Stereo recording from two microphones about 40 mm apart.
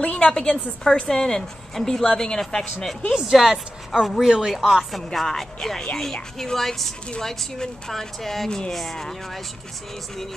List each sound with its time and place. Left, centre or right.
0.0 s a sound: left
0.4 s speech: centre
3.2 s a woman's voice: centre
4.5 s a woman's voice: centre